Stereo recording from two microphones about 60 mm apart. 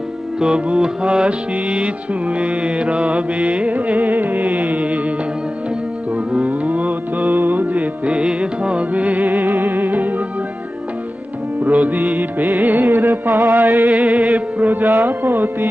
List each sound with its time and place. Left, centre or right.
0.4 s mantra: centre; by 4.5 s right
4.5 s mantra: centre
6.1 s mantra: right
8.1 s music: centre; by 10.2 s right
11.6 s mantra: right
12.9 s music: right
13.7 s a sound: centre
14.6 s music: right